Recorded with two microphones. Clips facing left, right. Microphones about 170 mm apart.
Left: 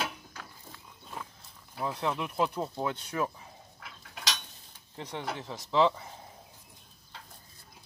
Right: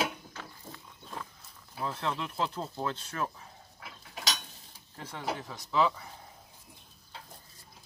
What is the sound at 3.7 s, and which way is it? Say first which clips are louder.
Mechanisms: right 4 dB; 5° right (ahead or behind).